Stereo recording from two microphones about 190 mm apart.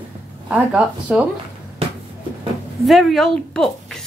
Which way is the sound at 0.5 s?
5° right (ahead or behind).